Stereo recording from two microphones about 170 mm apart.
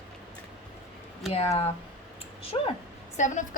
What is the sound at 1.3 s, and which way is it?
A woman's voice, 35° left (ahead or behind).